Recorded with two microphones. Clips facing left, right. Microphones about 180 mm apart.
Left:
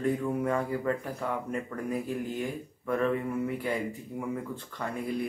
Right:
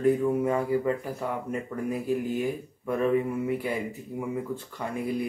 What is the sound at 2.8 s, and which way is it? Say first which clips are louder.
Speech: right 2 dB; 10° right (ahead or behind).